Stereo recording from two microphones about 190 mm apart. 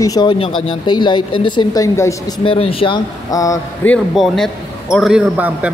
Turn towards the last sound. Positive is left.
turn(degrees=-5)  # may be behind; listen again after turning